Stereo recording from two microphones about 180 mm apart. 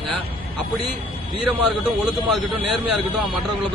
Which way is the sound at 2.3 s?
Centre (ahead or behind).